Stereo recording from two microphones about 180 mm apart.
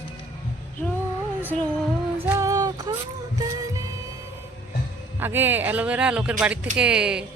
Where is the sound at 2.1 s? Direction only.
10° right (ahead or behind).